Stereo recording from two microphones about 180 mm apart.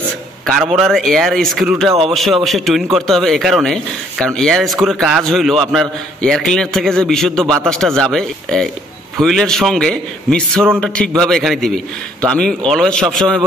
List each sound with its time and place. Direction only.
0.7 s speech: centre (ahead or behind)